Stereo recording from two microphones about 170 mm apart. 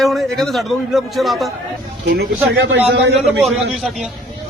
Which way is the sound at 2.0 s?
70° right (ahead or behind).